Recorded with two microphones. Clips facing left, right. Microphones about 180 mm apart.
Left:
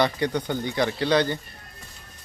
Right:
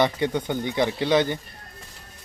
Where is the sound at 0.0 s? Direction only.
20° right (ahead or behind).